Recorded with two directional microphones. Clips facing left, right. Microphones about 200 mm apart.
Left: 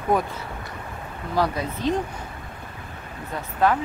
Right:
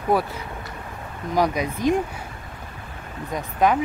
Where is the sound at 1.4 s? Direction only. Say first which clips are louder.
Right 2 dB; 15° right (ahead or behind).